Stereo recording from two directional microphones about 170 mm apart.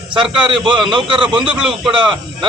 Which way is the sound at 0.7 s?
Centre (ahead or behind).